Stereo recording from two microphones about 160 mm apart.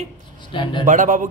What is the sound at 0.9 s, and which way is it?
Speech, 55° right (ahead or behind).